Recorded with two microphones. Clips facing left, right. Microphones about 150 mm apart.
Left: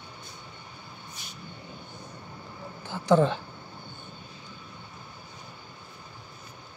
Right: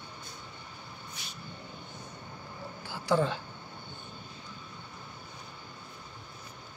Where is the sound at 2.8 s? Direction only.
20° left (ahead or behind).